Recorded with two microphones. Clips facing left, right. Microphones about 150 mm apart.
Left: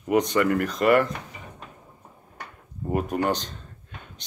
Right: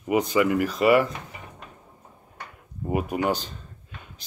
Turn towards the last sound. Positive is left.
turn(degrees=-5)  # may be behind; listen again after turning